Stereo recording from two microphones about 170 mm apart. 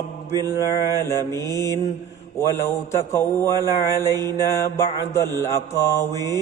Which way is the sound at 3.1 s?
15° left (ahead or behind).